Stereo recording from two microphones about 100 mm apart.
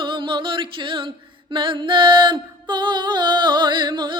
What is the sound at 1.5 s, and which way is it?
Music, 55° right (ahead or behind).